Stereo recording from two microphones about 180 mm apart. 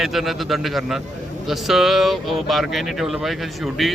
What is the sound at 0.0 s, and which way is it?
Speech, centre (ahead or behind).